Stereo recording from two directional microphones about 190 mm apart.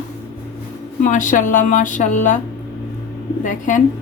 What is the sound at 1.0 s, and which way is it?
Speech, 40° left (ahead or behind).